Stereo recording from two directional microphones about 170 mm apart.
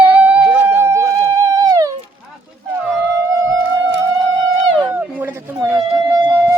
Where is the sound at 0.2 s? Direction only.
10° right (ahead or behind).